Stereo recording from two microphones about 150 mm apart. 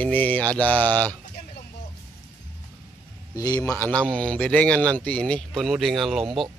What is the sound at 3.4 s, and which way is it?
Speech, 25° left (ahead or behind).